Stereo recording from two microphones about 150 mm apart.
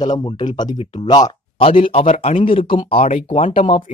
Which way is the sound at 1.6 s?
40° left (ahead or behind).